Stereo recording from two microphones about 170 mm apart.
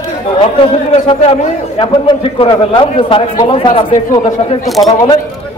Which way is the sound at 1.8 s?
30° left (ahead or behind).